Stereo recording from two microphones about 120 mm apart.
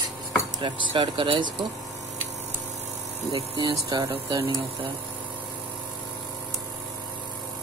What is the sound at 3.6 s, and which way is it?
Speech, 30° right (ahead or behind).